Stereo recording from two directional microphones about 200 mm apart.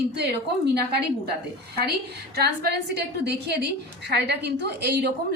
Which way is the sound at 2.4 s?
55° right (ahead or behind).